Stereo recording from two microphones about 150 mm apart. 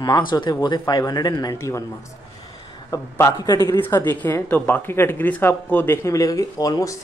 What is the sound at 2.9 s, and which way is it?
Speech, 20° left (ahead or behind).